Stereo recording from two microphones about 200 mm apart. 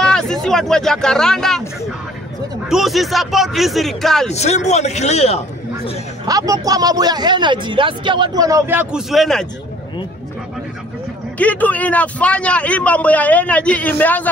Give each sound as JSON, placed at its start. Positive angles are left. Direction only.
{"t": 0.0, "sound": "speech", "side_deg": 5}
{"t": 2.7, "sound": "a man's voice", "side_deg": 0}
{"t": 4.3, "sound": "a man's voice", "side_deg": 35}
{"t": 6.2, "sound": "speech", "side_deg": -15}
{"t": 11.3, "sound": "a man's voice", "side_deg": 10}